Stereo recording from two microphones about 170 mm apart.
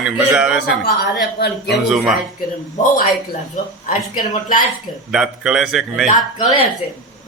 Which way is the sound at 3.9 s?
50° left (ahead or behind).